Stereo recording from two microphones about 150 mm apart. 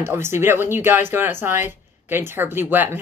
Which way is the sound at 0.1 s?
15° right (ahead or behind).